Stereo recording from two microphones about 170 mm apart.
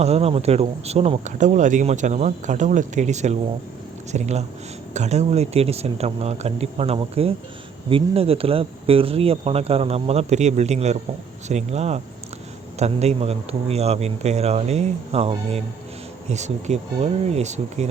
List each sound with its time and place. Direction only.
0.0 s speech: 35° right (ahead or behind)